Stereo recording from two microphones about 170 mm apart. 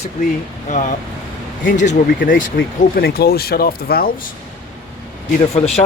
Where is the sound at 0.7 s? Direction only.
45° left (ahead or behind).